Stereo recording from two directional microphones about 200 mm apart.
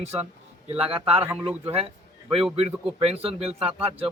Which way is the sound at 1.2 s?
10° right (ahead or behind).